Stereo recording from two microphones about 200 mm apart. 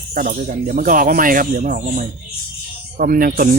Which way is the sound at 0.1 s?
45° right (ahead or behind).